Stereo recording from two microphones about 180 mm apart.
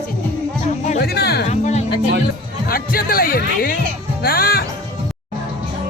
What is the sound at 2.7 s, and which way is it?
A man's voice, 55° left (ahead or behind).